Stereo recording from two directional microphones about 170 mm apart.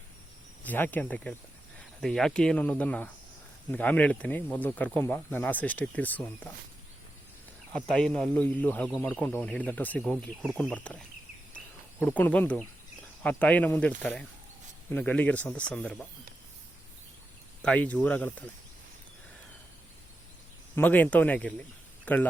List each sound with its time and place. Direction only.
0.6 s speech: 10° left (ahead or behind)
7.7 s speech: 5° left (ahead or behind)
11.5 s a sound: 10° left (ahead or behind)
13.2 s speech: 10° left (ahead or behind)
17.6 s speech: 5° left (ahead or behind)
20.7 s speech: 10° left (ahead or behind)